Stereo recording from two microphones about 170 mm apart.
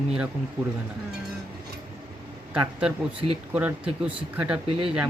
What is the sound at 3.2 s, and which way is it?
Speech, 35° right (ahead or behind).